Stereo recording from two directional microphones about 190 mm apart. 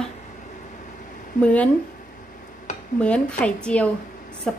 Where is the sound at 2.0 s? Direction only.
40° left (ahead or behind).